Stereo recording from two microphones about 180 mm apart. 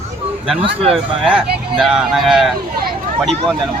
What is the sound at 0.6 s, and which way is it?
Speech, 35° right (ahead or behind).